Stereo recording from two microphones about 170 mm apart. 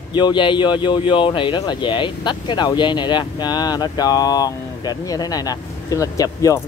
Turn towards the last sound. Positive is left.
turn(degrees=20)  # may be behind; listen again after turning